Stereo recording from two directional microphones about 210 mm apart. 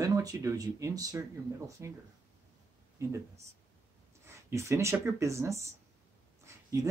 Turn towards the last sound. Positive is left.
turn(degrees=-15)  # may be behind; listen again after turning